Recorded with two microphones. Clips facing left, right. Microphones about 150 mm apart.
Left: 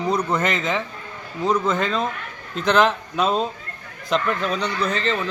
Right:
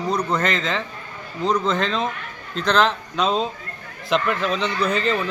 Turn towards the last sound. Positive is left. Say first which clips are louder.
# right 2 dB
turn(degrees=-5)  # may be behind; listen again after turning